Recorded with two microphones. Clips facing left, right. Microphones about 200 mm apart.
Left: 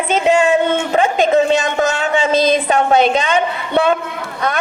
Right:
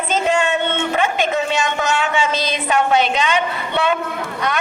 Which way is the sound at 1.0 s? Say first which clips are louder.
Left 8 dB; 35° left (ahead or behind).